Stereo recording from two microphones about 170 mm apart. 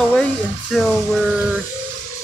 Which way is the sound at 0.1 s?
5° left (ahead or behind).